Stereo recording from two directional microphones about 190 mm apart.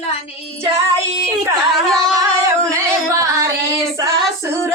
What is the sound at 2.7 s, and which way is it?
Music, 15° right (ahead or behind).